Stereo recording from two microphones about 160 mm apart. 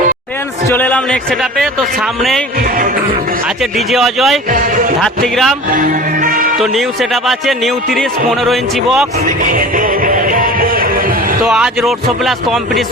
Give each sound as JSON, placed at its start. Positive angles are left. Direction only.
{"t": 0.7, "sound": "speech", "side_deg": 10}
{"t": 3.6, "sound": "speech", "side_deg": 0}
{"t": 4.5, "sound": "speech", "side_deg": -60}
{"t": 5.0, "sound": "speech", "side_deg": 0}
{"t": 5.7, "sound": "music", "side_deg": -60}
{"t": 6.6, "sound": "speech", "side_deg": 0}
{"t": 9.4, "sound": "music", "side_deg": -55}
{"t": 11.4, "sound": "speech", "side_deg": -5}